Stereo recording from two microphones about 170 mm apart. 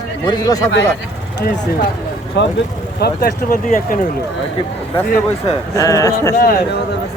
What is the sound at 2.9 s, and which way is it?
Speech, 65° left (ahead or behind).